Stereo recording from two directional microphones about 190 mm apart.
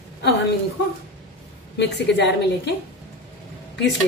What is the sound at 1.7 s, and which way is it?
A woman's voice, 65° left (ahead or behind).